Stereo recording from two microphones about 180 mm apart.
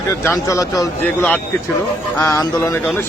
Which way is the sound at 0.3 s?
20° left (ahead or behind).